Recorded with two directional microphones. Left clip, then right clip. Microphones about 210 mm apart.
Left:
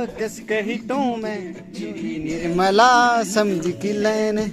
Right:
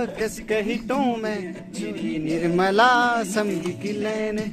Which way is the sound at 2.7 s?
15° left (ahead or behind).